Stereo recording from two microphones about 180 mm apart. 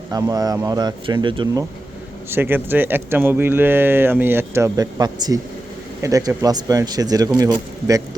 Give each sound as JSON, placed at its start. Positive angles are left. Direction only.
{"t": 0.1, "sound": "speech", "side_deg": -20}
{"t": 2.3, "sound": "speech", "side_deg": -10}